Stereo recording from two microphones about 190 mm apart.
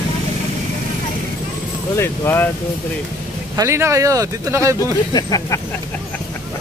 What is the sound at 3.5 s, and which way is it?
Speech, 15° right (ahead or behind).